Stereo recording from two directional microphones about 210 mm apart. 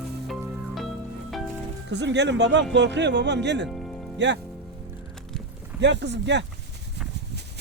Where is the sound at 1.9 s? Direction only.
55° right (ahead or behind).